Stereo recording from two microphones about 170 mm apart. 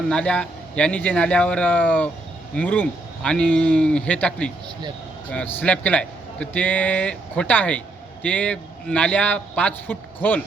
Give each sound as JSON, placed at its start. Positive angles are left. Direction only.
{"t": 0.1, "sound": "a man's voice", "side_deg": 5}